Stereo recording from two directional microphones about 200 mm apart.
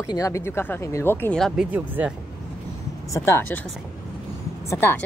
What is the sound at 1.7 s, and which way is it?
Speech, 10° right (ahead or behind).